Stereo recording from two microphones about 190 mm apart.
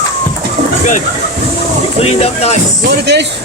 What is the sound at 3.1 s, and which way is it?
Speech, 65° right (ahead or behind).